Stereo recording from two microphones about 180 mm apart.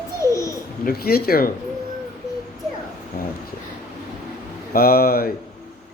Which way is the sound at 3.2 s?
55° left (ahead or behind).